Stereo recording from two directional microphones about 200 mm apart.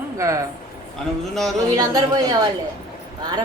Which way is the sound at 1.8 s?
20° right (ahead or behind).